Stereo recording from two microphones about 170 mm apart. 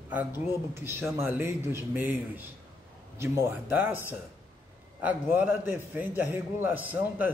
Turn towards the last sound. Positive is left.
turn(degrees=-10)  # may be behind; listen again after turning